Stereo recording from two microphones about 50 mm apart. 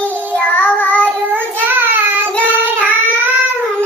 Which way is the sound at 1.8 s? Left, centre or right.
Right.